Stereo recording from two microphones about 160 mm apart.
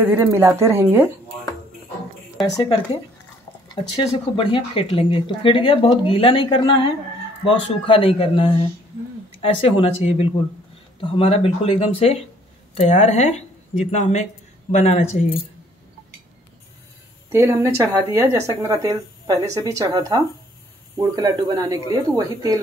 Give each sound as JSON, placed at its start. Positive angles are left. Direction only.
{"t": 0.0, "sound": "a woman's voice", "side_deg": -10}
{"t": 2.5, "sound": "speech", "side_deg": 30}
{"t": 3.9, "sound": "speech", "side_deg": 35}
{"t": 17.3, "sound": "speech", "side_deg": -20}